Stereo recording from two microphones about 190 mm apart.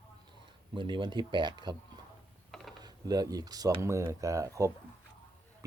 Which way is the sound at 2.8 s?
20° right (ahead or behind).